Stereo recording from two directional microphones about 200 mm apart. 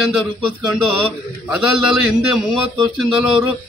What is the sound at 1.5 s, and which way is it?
A man's voice, 5° right (ahead or behind).